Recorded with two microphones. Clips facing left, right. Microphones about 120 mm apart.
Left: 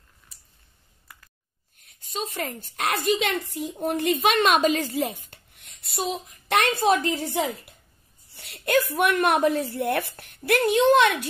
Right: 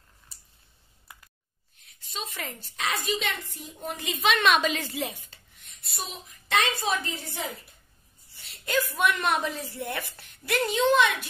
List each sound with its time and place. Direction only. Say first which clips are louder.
2.0 s a woman's voice: left 6 dB; 45° left (ahead or behind)
5.8 s a woman's voice: left 10 dB; 70° left (ahead or behind)
8.3 s a woman's voice: left 7 dB; 70° left (ahead or behind)
10.9 s speech: left 3 dB; 65° left (ahead or behind)